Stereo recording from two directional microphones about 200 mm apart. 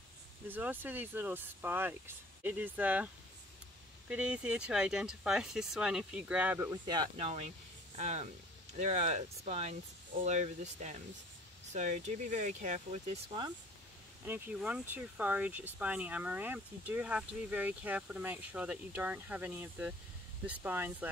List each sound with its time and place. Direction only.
0.5 s speech: 10° right (ahead or behind)
4.1 s speech: 5° right (ahead or behind)
7.2 s speech: 30° right (ahead or behind)
14.2 s speech: 10° right (ahead or behind)